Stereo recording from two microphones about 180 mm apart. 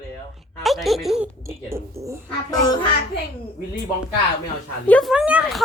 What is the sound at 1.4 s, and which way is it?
Speech, 15° right (ahead or behind).